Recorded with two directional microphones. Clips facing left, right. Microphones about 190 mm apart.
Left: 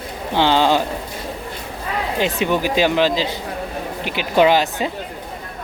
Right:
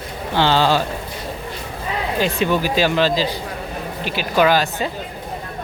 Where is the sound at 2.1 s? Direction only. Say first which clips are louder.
Even; 20° left (ahead or behind).